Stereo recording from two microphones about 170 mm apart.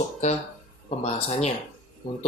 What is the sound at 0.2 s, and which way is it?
Speech, 45° left (ahead or behind).